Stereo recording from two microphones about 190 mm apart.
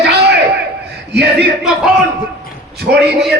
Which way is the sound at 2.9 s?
55° right (ahead or behind).